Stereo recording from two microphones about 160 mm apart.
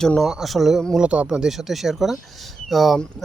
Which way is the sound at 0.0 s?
Centre (ahead or behind).